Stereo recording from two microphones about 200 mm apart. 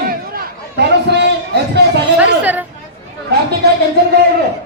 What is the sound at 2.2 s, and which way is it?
Chatter, 5° right (ahead or behind).